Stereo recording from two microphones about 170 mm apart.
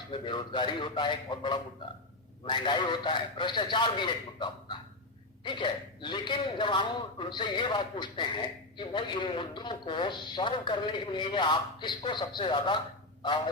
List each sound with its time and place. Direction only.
0.1 s a man's voice: 25° left (ahead or behind)